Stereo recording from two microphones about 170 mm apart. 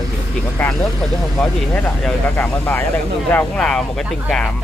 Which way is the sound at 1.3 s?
10° left (ahead or behind).